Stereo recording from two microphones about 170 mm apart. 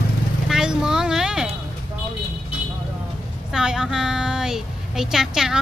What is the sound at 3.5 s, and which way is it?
A woman's voice, 5° right (ahead or behind).